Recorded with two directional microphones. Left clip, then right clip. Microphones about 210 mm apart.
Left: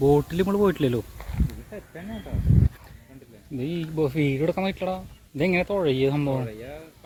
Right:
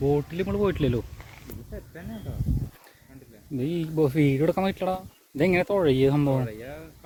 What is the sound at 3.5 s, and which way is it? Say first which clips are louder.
Speech: right 2 dB; 30° right (ahead or behind).